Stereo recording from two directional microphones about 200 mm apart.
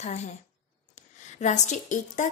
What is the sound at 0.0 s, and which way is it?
A woman's voice, 35° left (ahead or behind).